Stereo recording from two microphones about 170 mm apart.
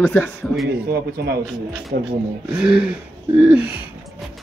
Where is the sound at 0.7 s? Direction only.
65° right (ahead or behind).